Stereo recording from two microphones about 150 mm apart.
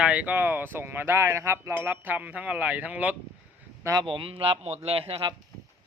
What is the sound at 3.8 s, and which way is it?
Speech, 20° right (ahead or behind).